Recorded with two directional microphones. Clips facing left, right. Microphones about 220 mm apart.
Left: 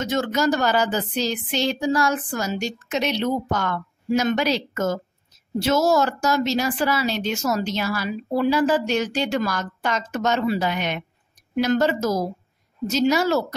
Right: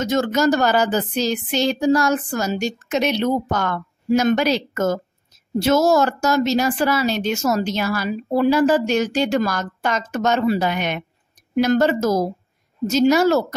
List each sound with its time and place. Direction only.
0.0 s a woman's voice: 40° right (ahead or behind)